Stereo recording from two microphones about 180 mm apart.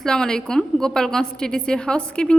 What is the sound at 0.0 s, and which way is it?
A woman's voice, 5° left (ahead or behind).